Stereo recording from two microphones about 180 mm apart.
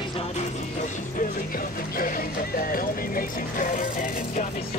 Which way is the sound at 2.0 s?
50° left (ahead or behind).